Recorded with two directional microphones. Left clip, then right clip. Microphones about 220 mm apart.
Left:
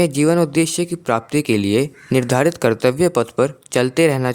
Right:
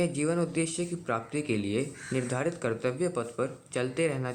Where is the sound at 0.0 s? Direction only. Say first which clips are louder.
Left 13 dB; 55° left (ahead or behind).